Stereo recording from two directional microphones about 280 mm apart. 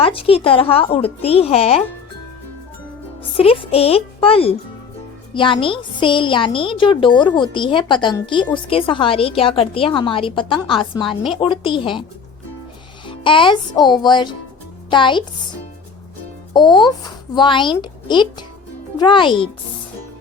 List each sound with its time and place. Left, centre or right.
0.0 s a woman's voice: centre
3.3 s a woman's voice: centre
13.1 s music: centre
14.0 s a woman's voice: centre
16.6 s a woman's voice: centre